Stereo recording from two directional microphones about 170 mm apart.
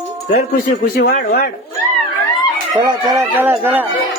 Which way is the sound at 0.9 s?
65° left (ahead or behind).